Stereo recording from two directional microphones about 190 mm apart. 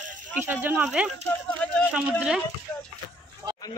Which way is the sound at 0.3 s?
10° right (ahead or behind).